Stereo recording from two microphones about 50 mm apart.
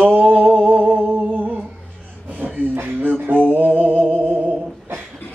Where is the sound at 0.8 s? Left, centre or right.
Right.